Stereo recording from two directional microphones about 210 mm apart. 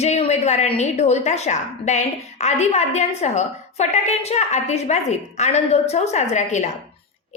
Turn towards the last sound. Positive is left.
turn(degrees=35)  # may be behind; listen again after turning